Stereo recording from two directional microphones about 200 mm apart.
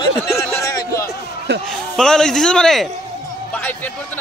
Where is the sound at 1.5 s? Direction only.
55° right (ahead or behind).